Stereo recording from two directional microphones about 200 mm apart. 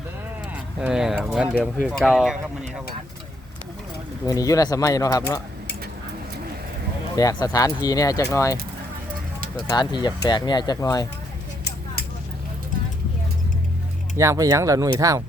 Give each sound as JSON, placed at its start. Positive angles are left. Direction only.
{"t": 0.5, "sound": "speech", "side_deg": -5}
{"t": 4.3, "sound": "speech", "side_deg": 15}
{"t": 7.2, "sound": "speech", "side_deg": 20}
{"t": 9.6, "sound": "speech", "side_deg": 20}
{"t": 14.2, "sound": "speech", "side_deg": -15}